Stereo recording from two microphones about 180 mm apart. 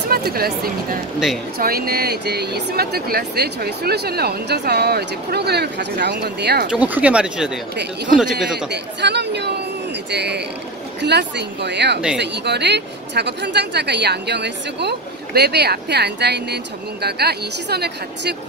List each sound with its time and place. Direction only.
0.1 s a sound: 55° right (ahead or behind)
1.6 s speech: 55° right (ahead or behind)
6.7 s speech: 10° right (ahead or behind)
9.0 s speech: 70° right (ahead or behind)